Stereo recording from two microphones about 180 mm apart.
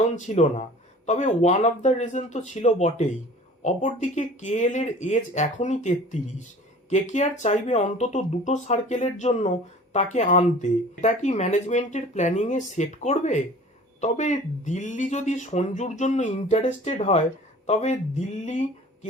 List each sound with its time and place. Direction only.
0.0 s speech: 40° left (ahead or behind)